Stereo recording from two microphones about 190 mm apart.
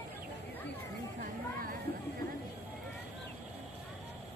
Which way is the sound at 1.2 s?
50° right (ahead or behind).